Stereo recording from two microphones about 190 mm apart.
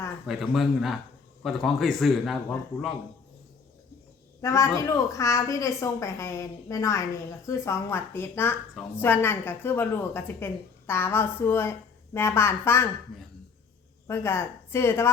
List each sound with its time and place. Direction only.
0.3 s a man's voice: centre (ahead or behind)
4.4 s a woman's voice: 15° left (ahead or behind)
14.1 s a woman's voice: 15° left (ahead or behind)